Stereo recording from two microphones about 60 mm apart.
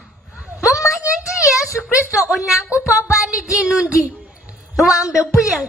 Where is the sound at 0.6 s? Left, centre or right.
Left.